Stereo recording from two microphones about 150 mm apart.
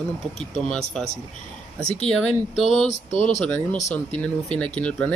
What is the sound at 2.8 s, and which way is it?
Speech, 50° left (ahead or behind).